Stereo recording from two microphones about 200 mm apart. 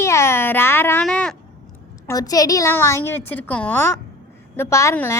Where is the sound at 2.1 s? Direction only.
20° left (ahead or behind).